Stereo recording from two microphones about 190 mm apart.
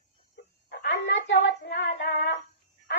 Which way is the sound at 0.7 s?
60° left (ahead or behind).